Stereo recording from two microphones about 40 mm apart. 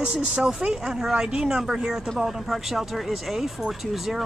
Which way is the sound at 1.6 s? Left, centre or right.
Centre.